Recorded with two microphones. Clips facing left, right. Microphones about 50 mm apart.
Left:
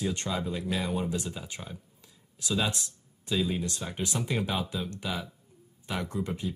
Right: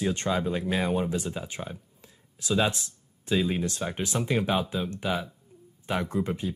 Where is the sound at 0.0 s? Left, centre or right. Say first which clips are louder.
Right 4 dB; right.